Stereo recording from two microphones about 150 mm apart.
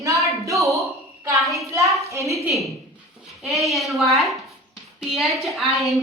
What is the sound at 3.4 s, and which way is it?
Speech, centre (ahead or behind).